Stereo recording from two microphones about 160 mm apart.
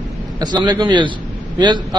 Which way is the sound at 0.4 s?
25° right (ahead or behind).